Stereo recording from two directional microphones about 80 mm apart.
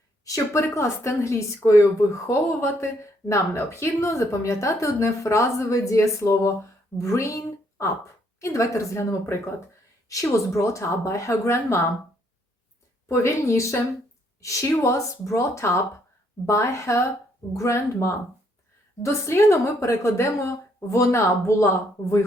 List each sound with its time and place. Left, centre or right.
0.3 s speech: left
10.1 s speech: left
13.1 s speech: left